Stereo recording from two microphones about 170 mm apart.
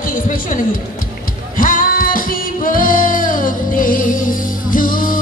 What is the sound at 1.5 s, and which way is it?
Music, 55° left (ahead or behind).